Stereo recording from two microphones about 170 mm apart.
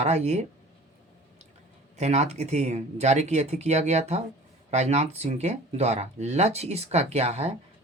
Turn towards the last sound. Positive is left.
turn(degrees=-40)  # may be behind; listen again after turning